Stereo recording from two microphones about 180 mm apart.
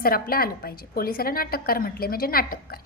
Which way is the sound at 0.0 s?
55° left (ahead or behind).